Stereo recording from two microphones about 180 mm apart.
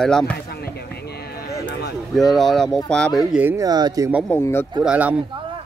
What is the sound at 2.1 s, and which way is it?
Speech, centre (ahead or behind).